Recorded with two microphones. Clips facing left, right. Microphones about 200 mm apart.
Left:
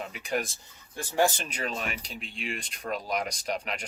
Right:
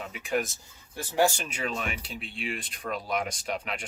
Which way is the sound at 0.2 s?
40° left (ahead or behind).